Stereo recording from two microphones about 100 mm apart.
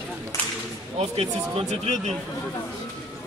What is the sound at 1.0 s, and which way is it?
Speech, 85° right.